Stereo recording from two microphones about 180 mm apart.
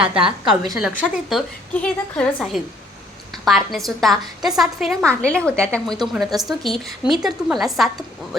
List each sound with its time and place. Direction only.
0.1 s a woman's voice: 30° right (ahead or behind)
1.0 s a woman's voice: 5° left (ahead or behind)